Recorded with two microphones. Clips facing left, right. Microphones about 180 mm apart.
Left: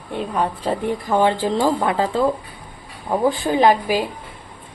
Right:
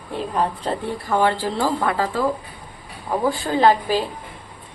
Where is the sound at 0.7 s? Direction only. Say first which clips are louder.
Left 3 dB; 15° left (ahead or behind).